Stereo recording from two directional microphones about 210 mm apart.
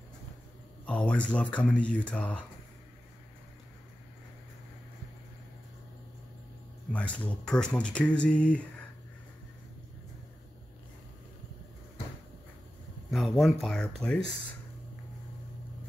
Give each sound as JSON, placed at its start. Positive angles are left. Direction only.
{"t": 0.8, "sound": "speech", "side_deg": 5}
{"t": 6.9, "sound": "speech", "side_deg": 5}
{"t": 13.1, "sound": "speech", "side_deg": 0}